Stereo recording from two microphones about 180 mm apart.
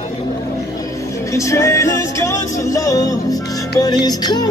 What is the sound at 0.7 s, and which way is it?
Music, 15° left (ahead or behind).